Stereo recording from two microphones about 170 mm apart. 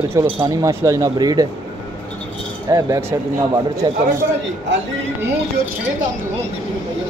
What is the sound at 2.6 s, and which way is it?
Speech, 20° right (ahead or behind).